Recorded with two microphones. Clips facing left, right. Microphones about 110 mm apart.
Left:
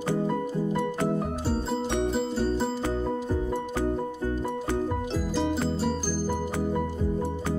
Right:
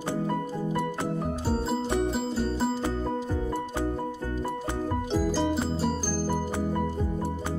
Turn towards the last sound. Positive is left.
turn(degrees=0)  # may be behind; listen again after turning